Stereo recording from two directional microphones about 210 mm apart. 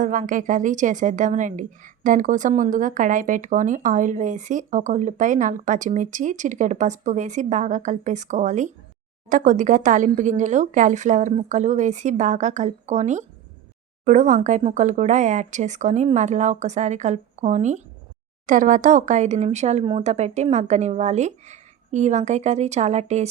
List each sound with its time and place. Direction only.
0.0 s a woman's voice: 40° right (ahead or behind)